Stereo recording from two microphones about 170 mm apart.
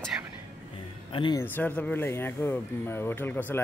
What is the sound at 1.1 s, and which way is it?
Speech, 30° left (ahead or behind).